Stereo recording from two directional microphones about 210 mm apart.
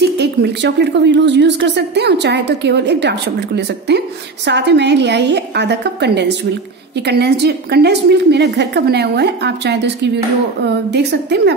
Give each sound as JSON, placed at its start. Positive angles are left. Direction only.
{"t": 0.0, "sound": "a woman's voice", "side_deg": -55}